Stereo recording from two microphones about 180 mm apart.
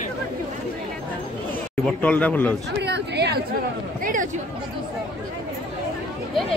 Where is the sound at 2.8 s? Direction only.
70° right (ahead or behind).